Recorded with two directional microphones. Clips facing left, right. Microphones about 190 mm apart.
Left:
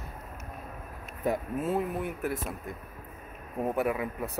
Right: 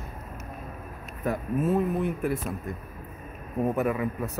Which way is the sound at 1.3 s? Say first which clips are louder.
Right 3 dB; 15° left (ahead or behind).